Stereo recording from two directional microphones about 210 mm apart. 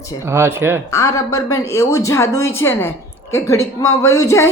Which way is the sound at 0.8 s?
15° left (ahead or behind).